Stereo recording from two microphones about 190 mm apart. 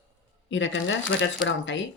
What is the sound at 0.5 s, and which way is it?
Speech, 75° left (ahead or behind).